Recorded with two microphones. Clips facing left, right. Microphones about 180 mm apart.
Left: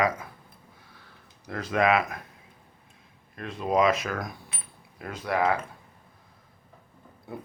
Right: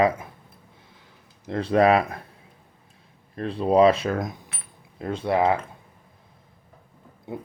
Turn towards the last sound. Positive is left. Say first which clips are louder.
# right 4 dB
turn(degrees=-20)  # may be behind; listen again after turning